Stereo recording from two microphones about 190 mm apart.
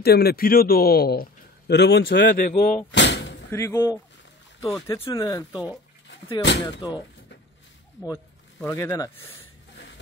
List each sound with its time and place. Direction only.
0.0 s a man's voice: 55° left (ahead or behind)
2.4 s speech: 50° left (ahead or behind)
2.9 s slam: 70° left (ahead or behind)
3.4 s speech: 15° left (ahead or behind)
5.1 s speech: 20° left (ahead or behind)
5.5 s speech: 5° right (ahead or behind)
6.4 s speech: 65° left (ahead or behind)
8.5 s speech: 10° left (ahead or behind)